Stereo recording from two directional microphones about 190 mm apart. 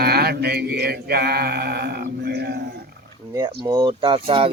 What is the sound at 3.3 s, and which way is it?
Mantra, 20° right (ahead or behind).